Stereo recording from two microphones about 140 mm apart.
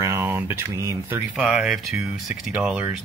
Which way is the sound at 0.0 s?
15° right (ahead or behind).